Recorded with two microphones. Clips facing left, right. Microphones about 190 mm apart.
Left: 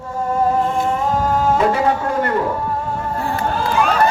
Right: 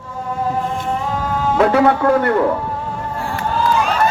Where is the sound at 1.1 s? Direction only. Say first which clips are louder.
Left 4 dB; 45° left (ahead or behind).